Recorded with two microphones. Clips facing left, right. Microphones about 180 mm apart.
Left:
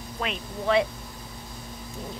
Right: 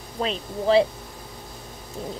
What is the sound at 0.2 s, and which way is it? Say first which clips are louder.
Speech: right 5 dB; 30° right (ahead or behind).